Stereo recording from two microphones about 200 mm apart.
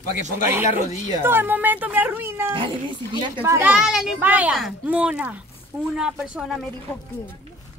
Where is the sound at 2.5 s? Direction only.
25° right (ahead or behind).